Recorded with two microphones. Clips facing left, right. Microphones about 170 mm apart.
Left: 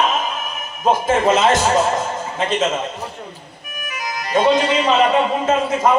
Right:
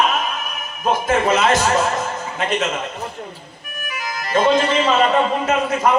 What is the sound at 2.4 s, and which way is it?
Speech, 25° left (ahead or behind).